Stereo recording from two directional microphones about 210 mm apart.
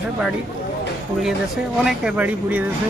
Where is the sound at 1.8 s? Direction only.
5° right (ahead or behind).